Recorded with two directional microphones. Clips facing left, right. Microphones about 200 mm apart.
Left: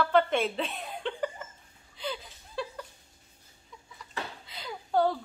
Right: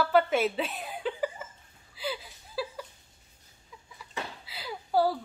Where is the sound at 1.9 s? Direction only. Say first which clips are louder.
Right 1 dB; 5° right (ahead or behind).